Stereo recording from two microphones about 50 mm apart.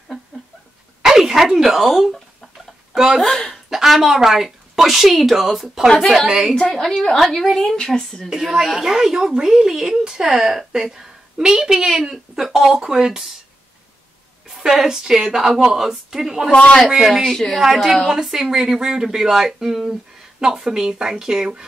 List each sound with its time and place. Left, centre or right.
1.0 s speech: centre
2.9 s a sound: centre
3.2 s a woman's voice: centre
7.2 s a woman's voice: centre
8.3 s speech: centre
14.5 s speech: centre
16.5 s speech: centre
17.6 s a woman's voice: centre